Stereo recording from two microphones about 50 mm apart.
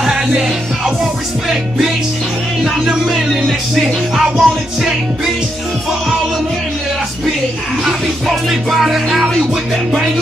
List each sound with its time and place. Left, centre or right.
0.0 s music: centre
2.6 s music: centre
7.8 s music: centre